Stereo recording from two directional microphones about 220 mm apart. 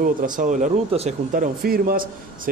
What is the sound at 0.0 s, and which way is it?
Speech, 35° right (ahead or behind).